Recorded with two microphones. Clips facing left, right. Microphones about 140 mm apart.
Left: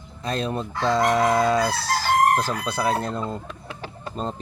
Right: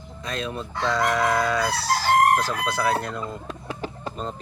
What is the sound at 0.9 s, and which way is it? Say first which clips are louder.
Fowl: left 3 dB; 30° left (ahead or behind).